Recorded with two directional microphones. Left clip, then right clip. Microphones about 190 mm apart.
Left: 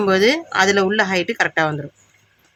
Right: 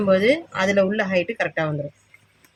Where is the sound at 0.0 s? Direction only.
45° left (ahead or behind).